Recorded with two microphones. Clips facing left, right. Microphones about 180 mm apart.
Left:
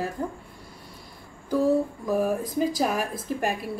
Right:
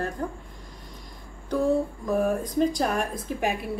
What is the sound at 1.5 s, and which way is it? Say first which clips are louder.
A woman's voice: left 1 dB; 5° left (ahead or behind).